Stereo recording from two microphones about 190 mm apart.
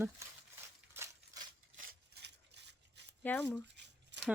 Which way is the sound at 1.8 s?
65° right (ahead or behind).